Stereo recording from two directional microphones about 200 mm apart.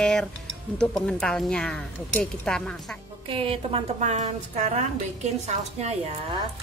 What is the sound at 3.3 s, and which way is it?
A woman's voice, 25° right (ahead or behind).